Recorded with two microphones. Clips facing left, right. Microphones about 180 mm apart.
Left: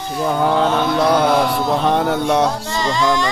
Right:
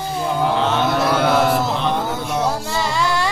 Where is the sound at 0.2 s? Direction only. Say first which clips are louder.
Left 4 dB; 55° left (ahead or behind).